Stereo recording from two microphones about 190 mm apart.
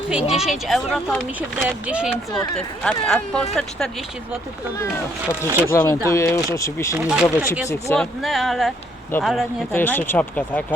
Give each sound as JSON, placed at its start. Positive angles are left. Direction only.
{"t": 0.1, "sound": "speech", "side_deg": -5}
{"t": 5.5, "sound": "speech", "side_deg": -15}
{"t": 5.7, "sound": "speech", "side_deg": 15}
{"t": 6.9, "sound": "speech", "side_deg": -10}
{"t": 9.7, "sound": "speech", "side_deg": 10}